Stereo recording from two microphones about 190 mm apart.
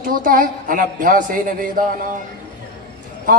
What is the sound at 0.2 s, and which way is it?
A man's voice, 45° right (ahead or behind).